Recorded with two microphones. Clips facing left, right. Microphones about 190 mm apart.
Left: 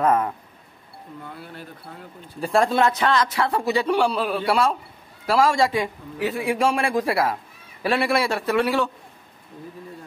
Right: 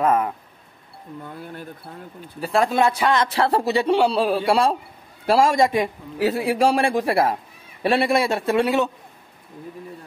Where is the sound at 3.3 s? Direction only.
35° right (ahead or behind).